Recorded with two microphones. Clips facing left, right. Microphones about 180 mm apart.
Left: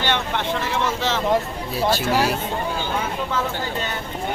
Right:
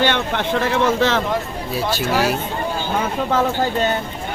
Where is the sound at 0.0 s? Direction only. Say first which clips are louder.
Right 4 dB; 55° right (ahead or behind).